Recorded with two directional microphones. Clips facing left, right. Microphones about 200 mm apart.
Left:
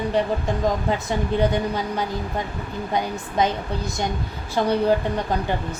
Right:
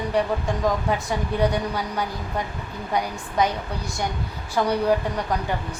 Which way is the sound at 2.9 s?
25° left (ahead or behind).